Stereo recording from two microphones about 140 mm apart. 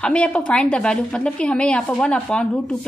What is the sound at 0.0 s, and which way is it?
A woman's voice, 10° left (ahead or behind).